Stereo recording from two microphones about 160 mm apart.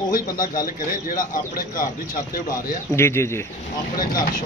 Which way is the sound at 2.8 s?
15° left (ahead or behind).